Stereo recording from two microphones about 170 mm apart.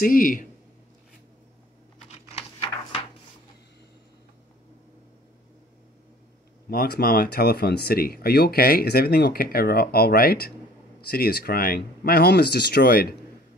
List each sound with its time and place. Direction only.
0.0 s speech: 55° left (ahead or behind)
2.0 s computer keyboard: 40° left (ahead or behind)
6.7 s speech: 65° left (ahead or behind)